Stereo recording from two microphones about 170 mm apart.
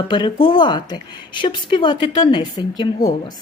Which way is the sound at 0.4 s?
25° left (ahead or behind).